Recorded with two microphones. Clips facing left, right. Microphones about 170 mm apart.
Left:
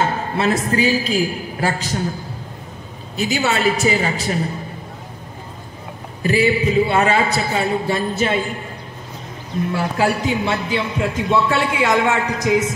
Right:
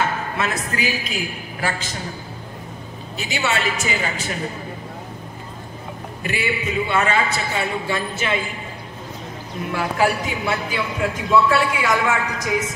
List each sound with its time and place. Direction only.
0.0 s a man's voice: 30° left (ahead or behind)
3.2 s a man's voice: 40° left (ahead or behind)
6.2 s a man's voice: 35° left (ahead or behind)
9.9 s speech: 25° left (ahead or behind)